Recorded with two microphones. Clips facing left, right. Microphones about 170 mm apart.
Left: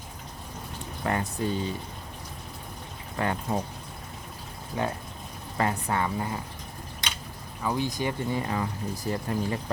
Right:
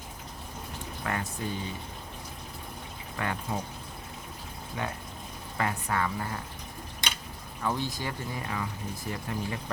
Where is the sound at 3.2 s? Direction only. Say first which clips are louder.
Left 4 dB; 30° left (ahead or behind).